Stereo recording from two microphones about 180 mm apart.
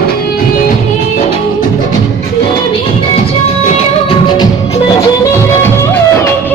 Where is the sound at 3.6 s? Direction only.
35° left (ahead or behind).